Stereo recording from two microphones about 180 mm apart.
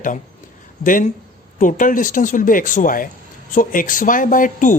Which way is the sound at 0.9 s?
50° left (ahead or behind).